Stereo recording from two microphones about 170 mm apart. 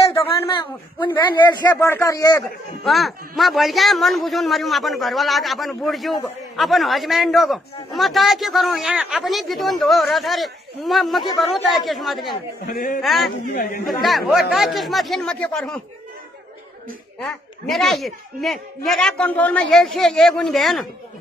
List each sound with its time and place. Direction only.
0.1 s a sound: 30° left (ahead or behind)
1.3 s a man's voice: 25° left (ahead or behind)
2.8 s a man's voice: centre (ahead or behind)
12.6 s a man's voice: 55° left (ahead or behind)
13.0 s a man's voice: centre (ahead or behind)
13.5 s a man's voice: 55° left (ahead or behind)
13.8 s a man's voice: centre (ahead or behind)
17.2 s a man's voice: centre (ahead or behind)